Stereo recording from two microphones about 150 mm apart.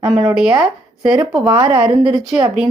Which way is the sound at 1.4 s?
35° right (ahead or behind).